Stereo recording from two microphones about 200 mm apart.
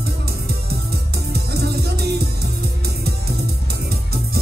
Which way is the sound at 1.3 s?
50° right (ahead or behind).